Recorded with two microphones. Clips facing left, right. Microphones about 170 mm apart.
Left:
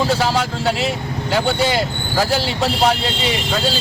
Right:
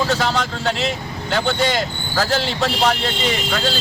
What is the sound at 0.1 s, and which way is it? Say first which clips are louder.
Speech: left 2 dB; 10° left (ahead or behind).